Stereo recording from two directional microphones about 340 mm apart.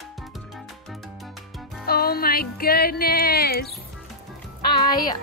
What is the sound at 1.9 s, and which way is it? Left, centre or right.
Music, left.